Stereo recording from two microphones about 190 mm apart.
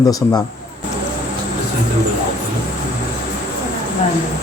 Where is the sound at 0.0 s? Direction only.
20° left (ahead or behind).